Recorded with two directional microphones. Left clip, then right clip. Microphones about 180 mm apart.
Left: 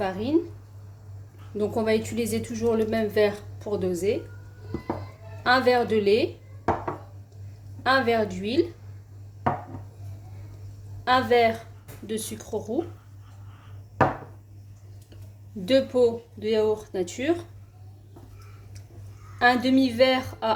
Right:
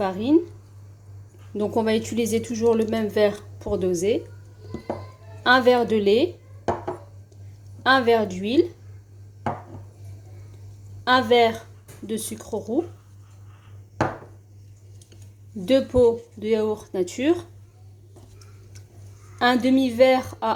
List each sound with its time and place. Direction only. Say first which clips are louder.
0.0 s a woman's voice: right 5 dB; 40° right (ahead or behind)
1.5 s a woman's voice: right 2 dB; 40° right (ahead or behind)
5.4 s a woman's voice: right 3 dB; 40° right (ahead or behind)
7.9 s a woman's voice: right 4 dB; 40° right (ahead or behind)
11.0 s a woman's voice: right 3 dB; 40° right (ahead or behind)
15.6 s a woman's voice: right 3 dB; 35° right (ahead or behind)
19.4 s a woman's voice: right 1 dB; 40° right (ahead or behind)